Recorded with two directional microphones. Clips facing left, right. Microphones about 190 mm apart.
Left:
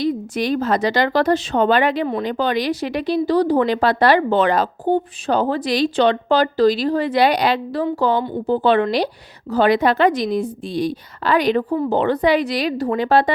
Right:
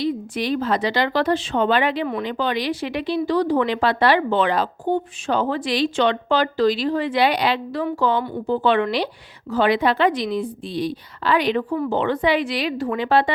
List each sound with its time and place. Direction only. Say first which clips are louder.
0.0 s a woman's voice: left 3 dB; 45° left (ahead or behind)